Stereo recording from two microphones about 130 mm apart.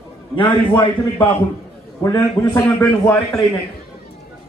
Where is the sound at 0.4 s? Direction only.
40° left (ahead or behind).